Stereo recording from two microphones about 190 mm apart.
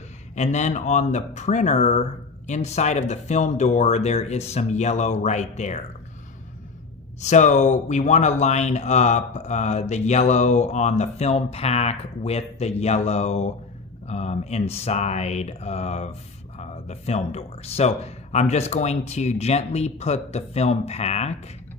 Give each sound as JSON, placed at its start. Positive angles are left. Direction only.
{"t": 0.4, "sound": "speech", "side_deg": 40}
{"t": 7.2, "sound": "speech", "side_deg": 40}